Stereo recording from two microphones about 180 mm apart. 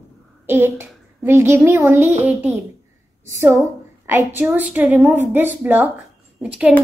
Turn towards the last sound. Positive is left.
turn(degrees=-5)  # may be behind; listen again after turning